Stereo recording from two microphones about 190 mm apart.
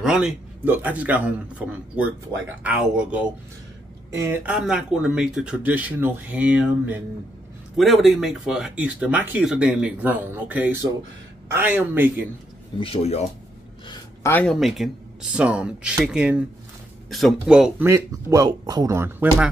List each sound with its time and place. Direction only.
0.0 s a man's voice: 5° right (ahead or behind)
12.8 s speech: 30° left (ahead or behind)
13.8 s speech: 10° left (ahead or behind); by 17.8 s 5° right (ahead or behind)
17.8 s a man's voice: 15° right (ahead or behind)